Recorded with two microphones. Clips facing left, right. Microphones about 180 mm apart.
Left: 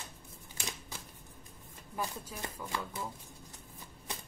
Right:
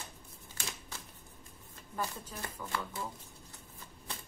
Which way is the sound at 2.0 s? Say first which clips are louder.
Even; 15° left (ahead or behind).